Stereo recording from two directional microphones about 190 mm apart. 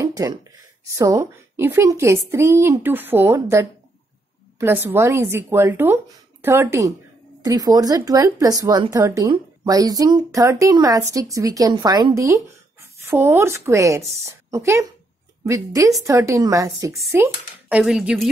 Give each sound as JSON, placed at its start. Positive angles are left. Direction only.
{"t": 0.0, "sound": "speech", "side_deg": -20}